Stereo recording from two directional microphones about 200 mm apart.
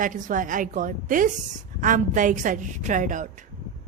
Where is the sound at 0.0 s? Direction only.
40° right (ahead or behind).